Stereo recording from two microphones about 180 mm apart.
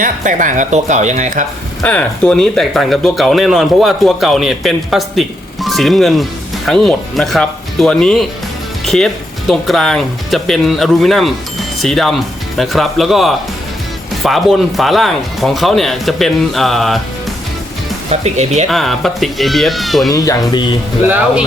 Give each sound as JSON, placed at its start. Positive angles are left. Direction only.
{"t": 0.0, "sound": "speech", "side_deg": -45}
{"t": 1.8, "sound": "speech", "side_deg": 5}
{"t": 18.1, "sound": "speech", "side_deg": -40}
{"t": 18.7, "sound": "speech", "side_deg": 0}
{"t": 20.1, "sound": "speech", "side_deg": 20}